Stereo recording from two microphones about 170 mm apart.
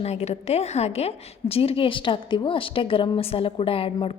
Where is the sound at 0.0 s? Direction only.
40° left (ahead or behind).